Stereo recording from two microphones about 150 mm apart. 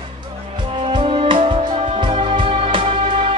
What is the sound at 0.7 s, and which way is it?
Music, 35° right (ahead or behind).